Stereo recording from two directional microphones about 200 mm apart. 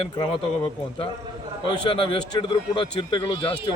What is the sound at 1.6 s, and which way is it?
A man's voice, 25° left (ahead or behind).